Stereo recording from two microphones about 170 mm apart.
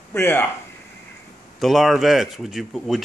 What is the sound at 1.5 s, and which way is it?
Speech, centre (ahead or behind).